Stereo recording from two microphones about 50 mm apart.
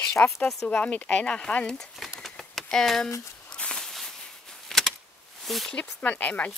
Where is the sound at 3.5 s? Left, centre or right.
Centre.